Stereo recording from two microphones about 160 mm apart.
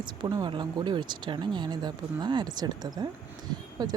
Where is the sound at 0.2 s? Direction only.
30° right (ahead or behind).